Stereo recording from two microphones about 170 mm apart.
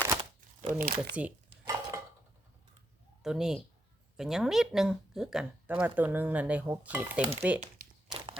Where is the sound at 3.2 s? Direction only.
5° right (ahead or behind).